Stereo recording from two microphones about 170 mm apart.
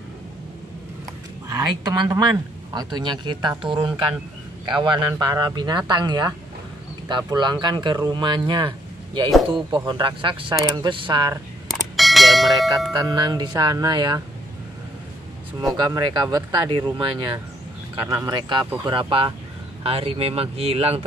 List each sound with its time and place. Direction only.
1.5 s speech: 20° right (ahead or behind)
11.6 s clang: centre (ahead or behind)
12.9 s speech: 25° right (ahead or behind)
15.7 s speech: 25° right (ahead or behind)